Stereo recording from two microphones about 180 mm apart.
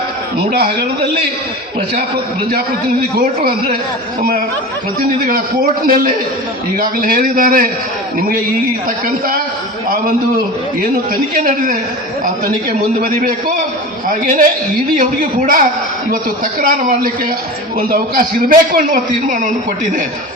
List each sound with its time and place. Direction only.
0.5 s a man's voice: 60° right (ahead or behind)
3.2 s a man's voice: 55° right (ahead or behind)
4.9 s a man's voice: 55° right (ahead or behind)
9.0 s a man's voice: 50° right (ahead or behind)
11.4 s a man's voice: 50° right (ahead or behind)
13.0 s a man's voice: 45° right (ahead or behind)